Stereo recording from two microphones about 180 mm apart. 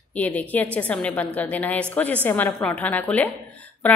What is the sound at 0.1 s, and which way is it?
A woman's voice, 10° left (ahead or behind).